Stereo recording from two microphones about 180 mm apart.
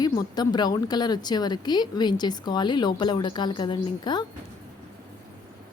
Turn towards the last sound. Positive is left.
turn(degrees=25)  # may be behind; listen again after turning